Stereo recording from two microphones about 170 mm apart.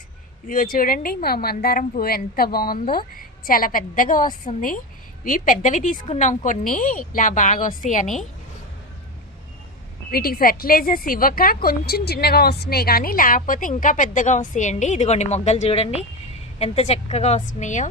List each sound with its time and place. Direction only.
0.4 s a woman's voice: 55° left (ahead or behind)
8.0 s a woman's voice: centre (ahead or behind)
10.1 s a woman's voice: 60° left (ahead or behind); by 17.8 s 45° left (ahead or behind)